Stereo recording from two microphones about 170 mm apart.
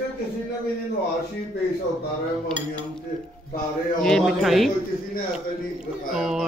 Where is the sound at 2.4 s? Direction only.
10° left (ahead or behind).